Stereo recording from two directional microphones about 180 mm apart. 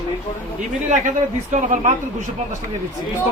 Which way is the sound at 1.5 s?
40° right (ahead or behind).